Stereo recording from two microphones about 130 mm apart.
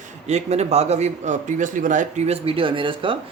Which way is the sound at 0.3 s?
60° right (ahead or behind).